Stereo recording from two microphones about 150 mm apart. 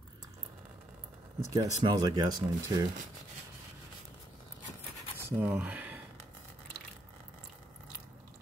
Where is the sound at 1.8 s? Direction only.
25° right (ahead or behind).